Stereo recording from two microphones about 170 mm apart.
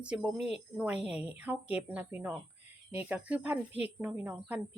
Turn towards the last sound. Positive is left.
turn(degrees=-10)  # may be behind; listen again after turning